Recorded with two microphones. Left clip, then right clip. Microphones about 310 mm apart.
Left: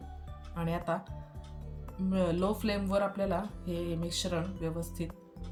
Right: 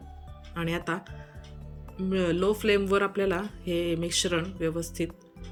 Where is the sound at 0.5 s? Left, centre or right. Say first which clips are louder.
Right 3 dB; centre.